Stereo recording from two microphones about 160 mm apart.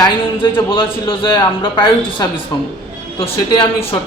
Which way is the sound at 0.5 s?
35° left (ahead or behind).